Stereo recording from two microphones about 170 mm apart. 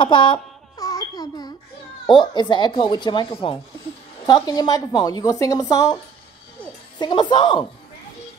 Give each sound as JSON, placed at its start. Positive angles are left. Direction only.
{"t": 0.0, "sound": "a sound", "side_deg": 30}
{"t": 2.0, "sound": "speech", "side_deg": 25}
{"t": 7.0, "sound": "speech", "side_deg": 25}